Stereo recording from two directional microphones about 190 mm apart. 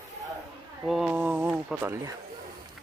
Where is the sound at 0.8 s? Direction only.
Centre (ahead or behind).